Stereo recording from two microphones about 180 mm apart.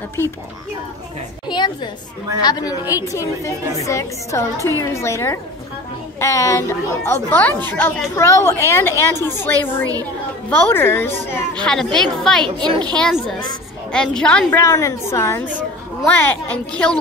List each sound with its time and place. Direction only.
2.4 s a woman's voice: 25° left (ahead or behind); by 12.4 s centre (ahead or behind)
12.4 s a child's voice: 25° right (ahead or behind)
12.9 s a woman's voice: centre (ahead or behind)